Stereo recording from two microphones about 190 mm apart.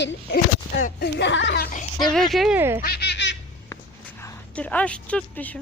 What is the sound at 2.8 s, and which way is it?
Baby laughter, 60° left (ahead or behind).